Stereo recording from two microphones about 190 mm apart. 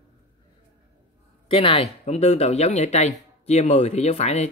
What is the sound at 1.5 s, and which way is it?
Speech, 30° left (ahead or behind).